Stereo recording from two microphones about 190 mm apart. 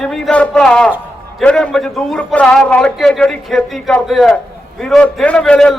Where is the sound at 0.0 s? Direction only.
5° left (ahead or behind).